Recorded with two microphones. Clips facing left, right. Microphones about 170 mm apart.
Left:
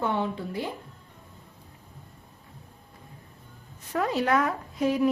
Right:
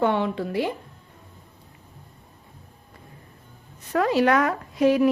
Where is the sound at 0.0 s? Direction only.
80° right.